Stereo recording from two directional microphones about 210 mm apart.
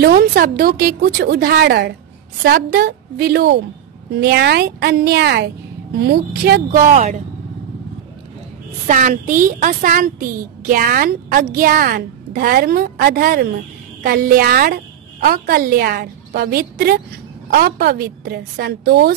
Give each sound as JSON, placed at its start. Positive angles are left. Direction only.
{"t": 0.0, "sound": "a woman's voice", "side_deg": -45}
{"t": 8.8, "sound": "a woman's voice", "side_deg": -40}